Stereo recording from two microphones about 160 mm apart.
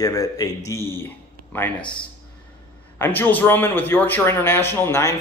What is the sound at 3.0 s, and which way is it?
A man's voice, 10° left (ahead or behind).